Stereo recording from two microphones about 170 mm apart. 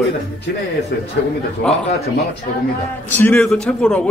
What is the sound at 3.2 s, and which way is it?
Speech, 10° left (ahead or behind).